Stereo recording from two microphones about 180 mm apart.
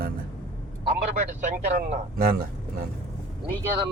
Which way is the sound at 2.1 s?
55° right (ahead or behind).